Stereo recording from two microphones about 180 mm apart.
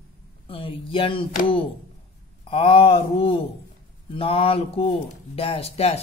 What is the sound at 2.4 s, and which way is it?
Speech, 30° left (ahead or behind).